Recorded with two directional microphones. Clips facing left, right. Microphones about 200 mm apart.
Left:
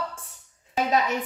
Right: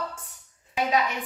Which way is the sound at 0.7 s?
40° left (ahead or behind).